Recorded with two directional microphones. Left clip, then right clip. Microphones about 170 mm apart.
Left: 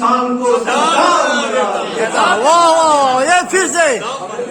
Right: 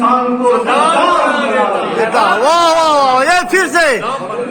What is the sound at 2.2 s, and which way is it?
A man's voice, 10° right (ahead or behind).